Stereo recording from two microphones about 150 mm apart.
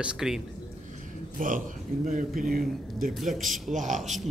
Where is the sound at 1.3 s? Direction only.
60° right (ahead or behind).